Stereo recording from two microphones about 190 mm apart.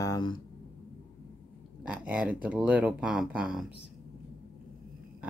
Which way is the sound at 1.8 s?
5° right (ahead or behind).